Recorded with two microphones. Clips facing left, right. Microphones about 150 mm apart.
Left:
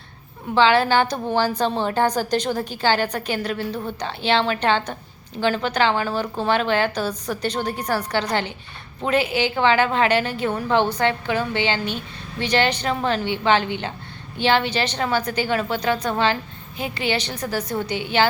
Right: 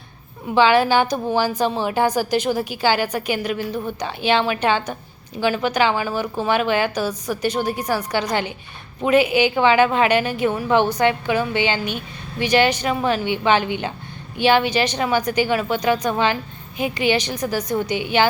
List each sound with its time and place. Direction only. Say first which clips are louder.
0.4 s a woman's voice: right 2 dB; 15° right (ahead or behind)